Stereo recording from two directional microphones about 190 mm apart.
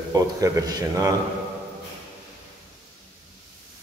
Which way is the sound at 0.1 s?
20° right (ahead or behind).